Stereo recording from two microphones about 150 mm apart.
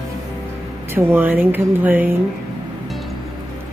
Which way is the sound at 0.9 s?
15° right (ahead or behind).